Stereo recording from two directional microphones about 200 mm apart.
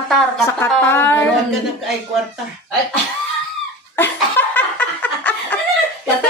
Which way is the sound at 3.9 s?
10° left (ahead or behind).